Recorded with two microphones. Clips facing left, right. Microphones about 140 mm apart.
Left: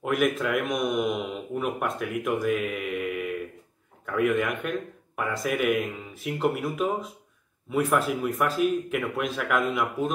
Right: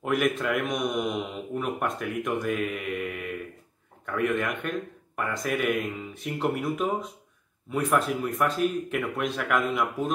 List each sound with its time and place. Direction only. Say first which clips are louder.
0.0 s speech: left 1 dB; centre (ahead or behind)